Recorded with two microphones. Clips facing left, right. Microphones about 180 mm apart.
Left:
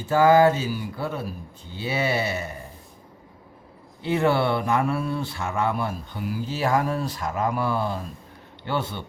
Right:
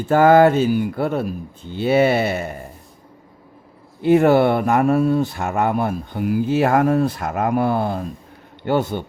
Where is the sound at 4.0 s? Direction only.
45° right (ahead or behind).